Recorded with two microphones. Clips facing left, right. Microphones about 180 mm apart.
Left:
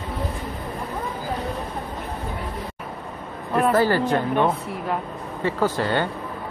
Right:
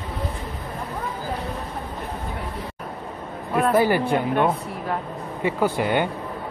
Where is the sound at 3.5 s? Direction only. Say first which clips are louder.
Left 1 dB; 5° right (ahead or behind).